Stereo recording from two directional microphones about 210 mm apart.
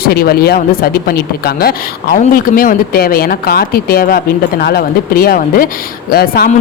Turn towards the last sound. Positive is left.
turn(degrees=45)  # may be behind; listen again after turning